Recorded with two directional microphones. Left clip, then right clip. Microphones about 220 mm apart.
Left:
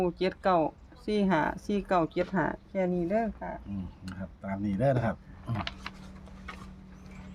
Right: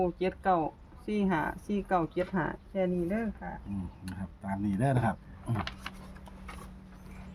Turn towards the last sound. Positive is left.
turn(degrees=5)  # may be behind; listen again after turning